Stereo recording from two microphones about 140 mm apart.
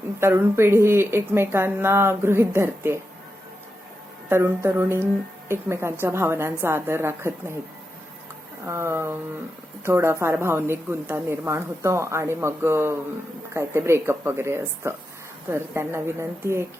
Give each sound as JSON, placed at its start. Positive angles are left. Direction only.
{"t": 0.2, "sound": "speech", "side_deg": -15}
{"t": 4.3, "sound": "speech", "side_deg": -15}
{"t": 8.6, "sound": "a woman's voice", "side_deg": -20}